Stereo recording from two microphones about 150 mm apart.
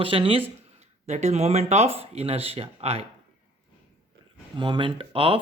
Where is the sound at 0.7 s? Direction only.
50° right (ahead or behind).